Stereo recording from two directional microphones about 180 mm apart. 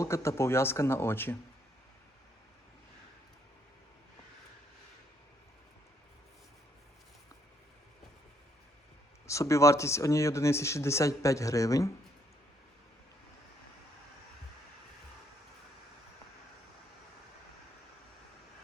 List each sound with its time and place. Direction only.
0.0 s speech: 15° left (ahead or behind)
9.2 s speech: 15° left (ahead or behind)